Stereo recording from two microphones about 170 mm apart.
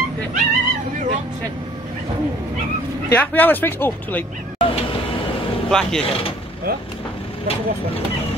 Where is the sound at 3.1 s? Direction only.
10° left (ahead or behind).